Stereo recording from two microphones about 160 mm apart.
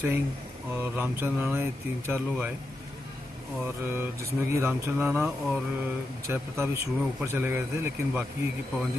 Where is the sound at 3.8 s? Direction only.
15° right (ahead or behind).